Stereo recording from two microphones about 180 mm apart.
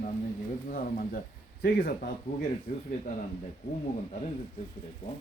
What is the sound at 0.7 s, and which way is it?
Speech, 50° left (ahead or behind).